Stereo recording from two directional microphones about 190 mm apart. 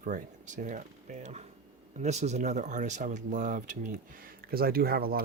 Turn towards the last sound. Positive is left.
turn(degrees=-50)  # may be behind; listen again after turning